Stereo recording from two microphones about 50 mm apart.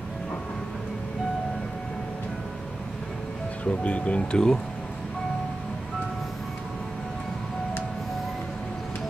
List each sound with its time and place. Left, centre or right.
3.6 s speech: left